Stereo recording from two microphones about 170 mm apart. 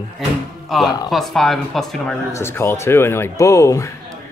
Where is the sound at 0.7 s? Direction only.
Centre (ahead or behind).